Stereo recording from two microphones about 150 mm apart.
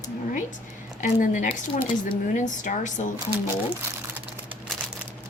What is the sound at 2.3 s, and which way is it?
Speech, 55° left (ahead or behind).